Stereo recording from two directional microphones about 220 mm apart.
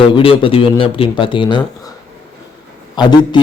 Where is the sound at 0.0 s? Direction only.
25° left (ahead or behind).